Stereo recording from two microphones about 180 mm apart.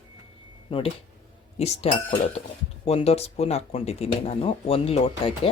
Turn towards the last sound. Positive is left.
turn(degrees=30)  # may be behind; listen again after turning